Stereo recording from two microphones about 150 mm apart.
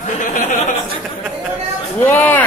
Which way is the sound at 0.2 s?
60° left (ahead or behind).